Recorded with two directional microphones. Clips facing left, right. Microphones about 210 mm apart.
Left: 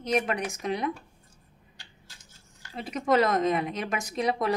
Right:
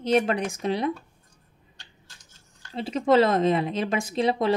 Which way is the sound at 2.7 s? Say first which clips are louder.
Right 4 dB; 30° right (ahead or behind).